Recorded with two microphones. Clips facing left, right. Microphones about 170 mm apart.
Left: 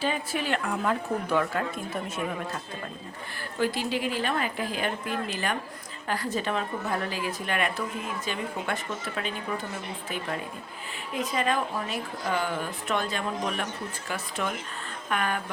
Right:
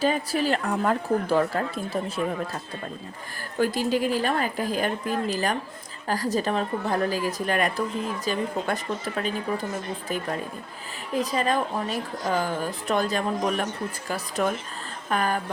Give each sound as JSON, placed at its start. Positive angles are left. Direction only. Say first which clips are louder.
{"t": 0.0, "sound": "a woman's voice", "louder": "right 5 dB", "side_deg": -40}
{"t": 3.6, "sound": "a woman's voice", "louder": "right 4 dB", "side_deg": -45}
{"t": 11.1, "sound": "a woman's voice", "louder": "right 3 dB", "side_deg": -35}